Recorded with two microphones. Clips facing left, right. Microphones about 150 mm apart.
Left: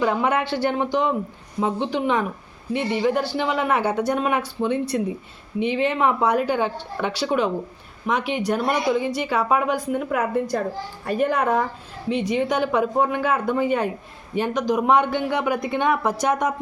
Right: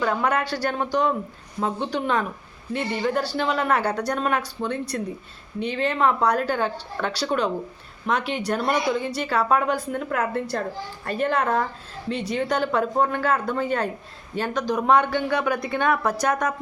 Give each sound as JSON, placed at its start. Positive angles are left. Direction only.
{"t": 0.0, "sound": "speech", "side_deg": 15}